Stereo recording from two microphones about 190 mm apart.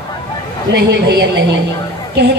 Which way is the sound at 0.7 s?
65° right (ahead or behind).